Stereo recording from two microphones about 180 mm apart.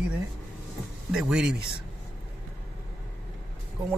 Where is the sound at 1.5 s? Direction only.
60° right (ahead or behind).